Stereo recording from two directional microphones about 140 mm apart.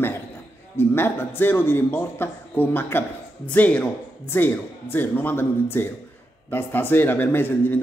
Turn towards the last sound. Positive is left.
turn(degrees=15)  # may be behind; listen again after turning